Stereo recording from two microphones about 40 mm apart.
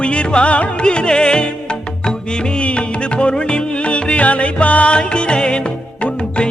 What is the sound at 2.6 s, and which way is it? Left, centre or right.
Music, left.